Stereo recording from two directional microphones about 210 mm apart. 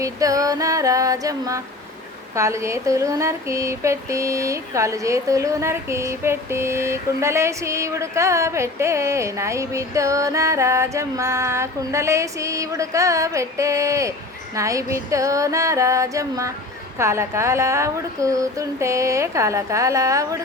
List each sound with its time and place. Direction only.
0.0 s female singing: 15° right (ahead or behind)
2.3 s speech: 15° right (ahead or behind)